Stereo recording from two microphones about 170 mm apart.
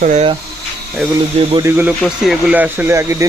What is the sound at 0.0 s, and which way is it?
Speech, 45° right (ahead or behind).